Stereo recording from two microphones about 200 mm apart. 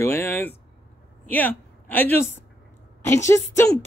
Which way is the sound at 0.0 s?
10° left (ahead or behind).